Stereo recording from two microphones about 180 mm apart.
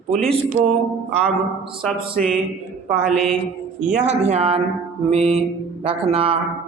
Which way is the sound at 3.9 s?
40° right (ahead or behind).